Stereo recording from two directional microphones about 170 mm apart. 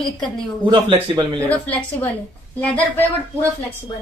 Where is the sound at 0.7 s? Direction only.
25° right (ahead or behind).